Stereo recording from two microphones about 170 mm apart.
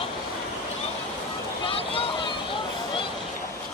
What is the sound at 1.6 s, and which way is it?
Boat, 35° left (ahead or behind).